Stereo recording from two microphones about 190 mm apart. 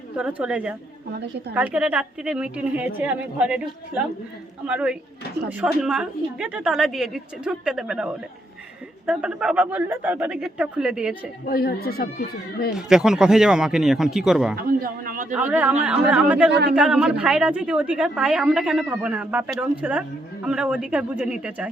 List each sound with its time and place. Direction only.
0.2 s a woman's voice: 5° right (ahead or behind)
11.4 s speech: 55° left (ahead or behind)
12.7 s a woman's voice: 5° right (ahead or behind)
14.7 s a man's voice: 50° right (ahead or behind)
15.4 s a woman's voice: 10° right (ahead or behind)
16.5 s speech: 60° right (ahead or behind)
16.7 s a woman's voice: 5° right (ahead or behind)